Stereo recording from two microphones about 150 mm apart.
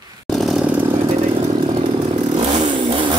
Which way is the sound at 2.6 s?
30° right (ahead or behind).